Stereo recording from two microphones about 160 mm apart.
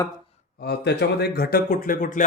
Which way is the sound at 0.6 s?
90° left.